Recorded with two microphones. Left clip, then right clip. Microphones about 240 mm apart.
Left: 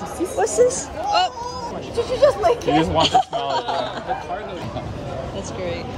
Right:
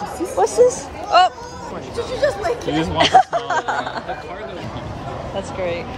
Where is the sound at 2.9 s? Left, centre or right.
Centre.